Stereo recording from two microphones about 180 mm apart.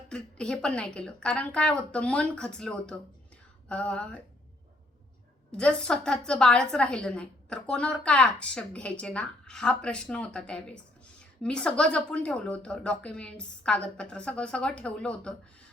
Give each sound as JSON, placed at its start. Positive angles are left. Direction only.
{"t": 0.1, "sound": "a woman's voice", "side_deg": 5}
{"t": 3.7, "sound": "a sound", "side_deg": 5}
{"t": 5.5, "sound": "a woman's voice", "side_deg": 5}